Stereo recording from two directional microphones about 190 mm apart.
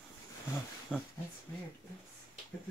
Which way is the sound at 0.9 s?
5° right (ahead or behind).